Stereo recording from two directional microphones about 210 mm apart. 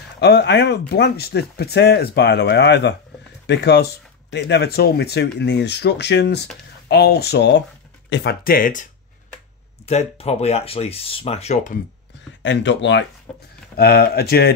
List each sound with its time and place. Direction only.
0.2 s speech: 55° left (ahead or behind)
9.8 s speech: 30° left (ahead or behind)
12.4 s speech: 60° left (ahead or behind)
13.3 s speech: 5° left (ahead or behind)
13.7 s speech: 50° left (ahead or behind)